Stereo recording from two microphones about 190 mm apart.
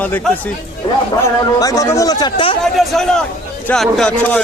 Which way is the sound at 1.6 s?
20° left (ahead or behind).